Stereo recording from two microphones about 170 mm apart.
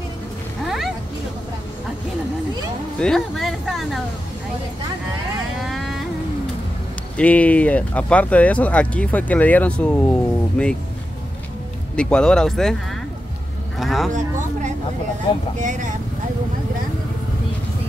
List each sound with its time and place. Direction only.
0.7 s cat: centre (ahead or behind)
3.0 s speech: centre (ahead or behind)
5.7 s vehicle: centre (ahead or behind)
7.2 s speech: 10° left (ahead or behind)
11.9 s speech: 5° left (ahead or behind)
13.7 s speech: centre (ahead or behind)
15.5 s speech: 45° right (ahead or behind)